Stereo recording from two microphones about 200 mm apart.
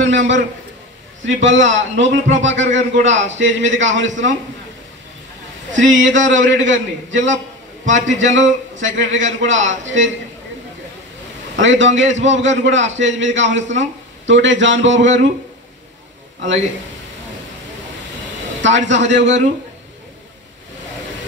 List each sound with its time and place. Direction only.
0.0 s a sound: 65° right (ahead or behind)
1.2 s a man's voice: 65° right (ahead or behind)
5.8 s a man's voice: 70° right (ahead or behind)
11.6 s a man's voice: 65° right (ahead or behind)
18.6 s a man's voice: 65° right (ahead or behind)